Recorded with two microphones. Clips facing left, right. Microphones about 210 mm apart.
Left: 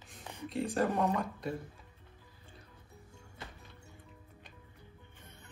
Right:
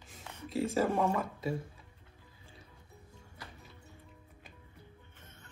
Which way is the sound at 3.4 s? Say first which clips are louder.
Left 2 dB; 25° left (ahead or behind).